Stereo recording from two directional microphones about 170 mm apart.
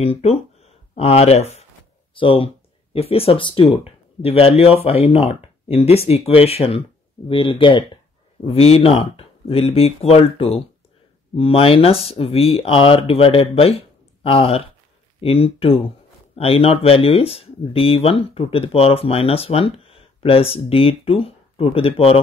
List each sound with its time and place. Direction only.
0.0 s speech: 35° left (ahead or behind)